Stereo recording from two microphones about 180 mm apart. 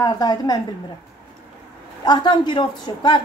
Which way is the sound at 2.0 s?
25° left (ahead or behind).